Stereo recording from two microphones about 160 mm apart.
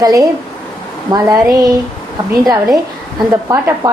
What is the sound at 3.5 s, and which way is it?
Speech, 20° right (ahead or behind).